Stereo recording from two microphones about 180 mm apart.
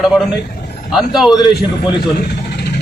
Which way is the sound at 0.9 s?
5° right (ahead or behind).